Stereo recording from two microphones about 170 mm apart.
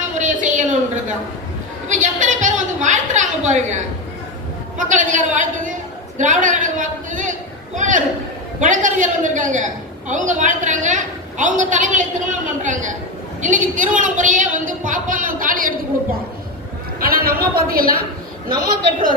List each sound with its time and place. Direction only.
0.2 s a sound: 45° right (ahead or behind)
4.8 s a woman's voice: 50° right (ahead or behind)
17.0 s a woman's voice: 60° right (ahead or behind)